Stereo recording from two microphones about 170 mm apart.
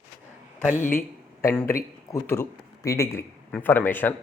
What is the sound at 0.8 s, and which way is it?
A man's voice, 15° left (ahead or behind).